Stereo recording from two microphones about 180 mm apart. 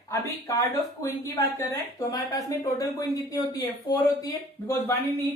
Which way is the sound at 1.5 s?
20° left (ahead or behind).